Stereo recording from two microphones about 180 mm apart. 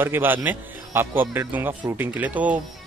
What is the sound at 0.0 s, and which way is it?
Speech, 10° right (ahead or behind).